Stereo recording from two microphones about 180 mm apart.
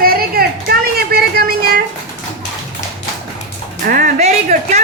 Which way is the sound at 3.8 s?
50° right (ahead or behind).